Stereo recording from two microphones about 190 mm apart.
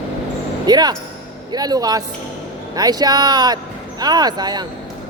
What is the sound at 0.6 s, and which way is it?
Speech, 20° right (ahead or behind).